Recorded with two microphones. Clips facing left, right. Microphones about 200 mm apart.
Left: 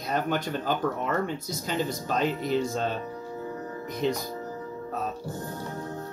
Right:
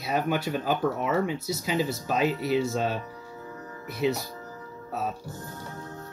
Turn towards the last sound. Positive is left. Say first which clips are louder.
# right 1 dB
turn(degrees=-5)  # may be behind; listen again after turning